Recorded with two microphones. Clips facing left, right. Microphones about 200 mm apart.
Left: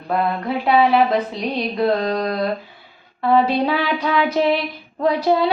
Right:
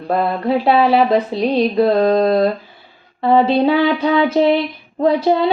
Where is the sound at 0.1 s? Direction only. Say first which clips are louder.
Right 4 dB; 30° right (ahead or behind).